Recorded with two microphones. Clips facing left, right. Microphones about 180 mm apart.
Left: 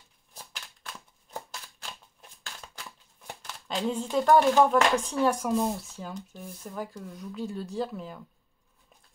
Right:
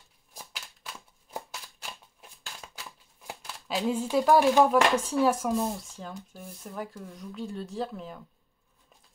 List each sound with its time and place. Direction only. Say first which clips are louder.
0.3 s shuffling cards: right 1 dB; 10° right (ahead or behind)
1.8 s scissors: right 1 dB; 10° right (ahead or behind)